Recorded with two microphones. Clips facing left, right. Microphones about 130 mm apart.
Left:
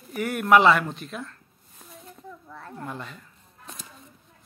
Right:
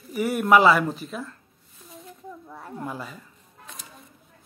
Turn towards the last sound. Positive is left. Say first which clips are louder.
# right 2 dB
turn(degrees=-5)  # may be behind; listen again after turning